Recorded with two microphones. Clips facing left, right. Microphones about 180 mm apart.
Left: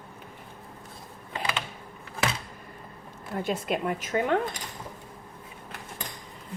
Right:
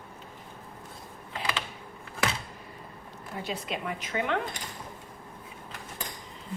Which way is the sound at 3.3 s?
50° left (ahead or behind).